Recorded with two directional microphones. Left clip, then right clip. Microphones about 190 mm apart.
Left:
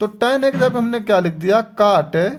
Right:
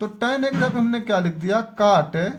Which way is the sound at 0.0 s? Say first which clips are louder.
Left 7 dB; 50° left (ahead or behind).